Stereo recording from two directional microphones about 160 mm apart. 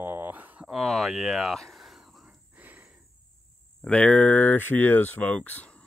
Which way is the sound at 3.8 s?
10° left (ahead or behind).